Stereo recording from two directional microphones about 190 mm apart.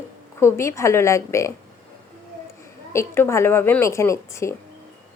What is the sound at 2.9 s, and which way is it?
A woman's voice, 15° left (ahead or behind).